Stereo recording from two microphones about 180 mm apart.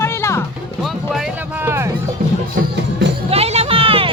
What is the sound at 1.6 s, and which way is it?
Music, 15° right (ahead or behind).